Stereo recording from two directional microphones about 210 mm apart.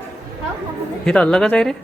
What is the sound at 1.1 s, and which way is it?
Speech, 5° left (ahead or behind).